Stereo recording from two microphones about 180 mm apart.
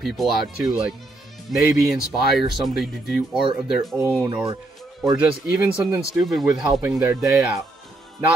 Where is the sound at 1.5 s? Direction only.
Centre (ahead or behind).